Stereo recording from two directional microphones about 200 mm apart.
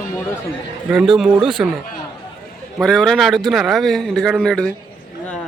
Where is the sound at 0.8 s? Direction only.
5° right (ahead or behind).